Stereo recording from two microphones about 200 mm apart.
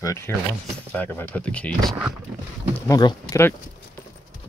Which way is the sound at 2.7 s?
20° left (ahead or behind).